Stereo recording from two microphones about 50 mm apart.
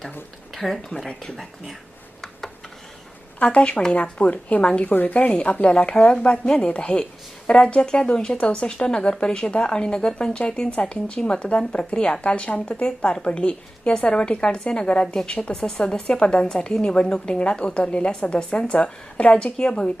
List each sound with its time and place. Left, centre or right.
0.5 s speech: centre
3.4 s a woman's voice: left
4.9 s a woman's voice: left
5.6 s a woman's voice: centre